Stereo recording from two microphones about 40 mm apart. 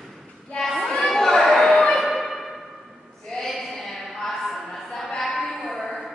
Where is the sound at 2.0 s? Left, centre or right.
Centre.